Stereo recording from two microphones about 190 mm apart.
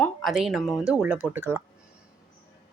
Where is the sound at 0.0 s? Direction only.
Centre (ahead or behind).